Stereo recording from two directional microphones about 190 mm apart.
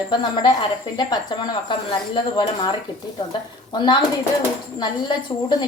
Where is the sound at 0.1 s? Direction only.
25° left (ahead or behind).